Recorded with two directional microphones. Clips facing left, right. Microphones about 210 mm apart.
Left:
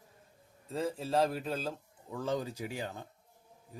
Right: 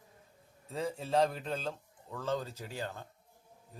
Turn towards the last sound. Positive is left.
turn(degrees=15)  # may be behind; listen again after turning